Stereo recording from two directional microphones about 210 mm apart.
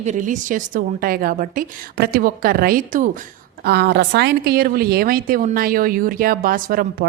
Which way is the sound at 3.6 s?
50° right (ahead or behind).